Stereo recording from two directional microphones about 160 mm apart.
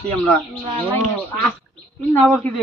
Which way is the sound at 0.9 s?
10° left (ahead or behind).